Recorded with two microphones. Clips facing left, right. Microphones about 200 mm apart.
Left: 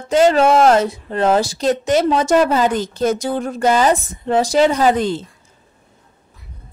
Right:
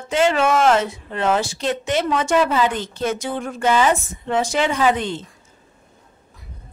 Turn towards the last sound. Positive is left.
turn(degrees=40)  # may be behind; listen again after turning